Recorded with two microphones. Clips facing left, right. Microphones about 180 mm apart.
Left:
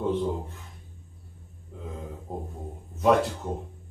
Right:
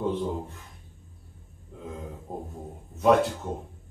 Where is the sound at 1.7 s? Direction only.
Centre (ahead or behind).